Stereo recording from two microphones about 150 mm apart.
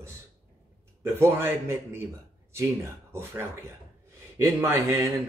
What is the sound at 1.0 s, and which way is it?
A man's voice, 15° right (ahead or behind).